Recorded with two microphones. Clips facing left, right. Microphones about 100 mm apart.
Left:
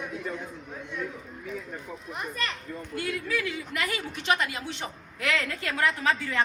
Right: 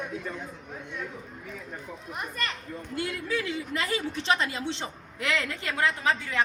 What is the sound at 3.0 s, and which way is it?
A woman's voice, 25° right (ahead or behind).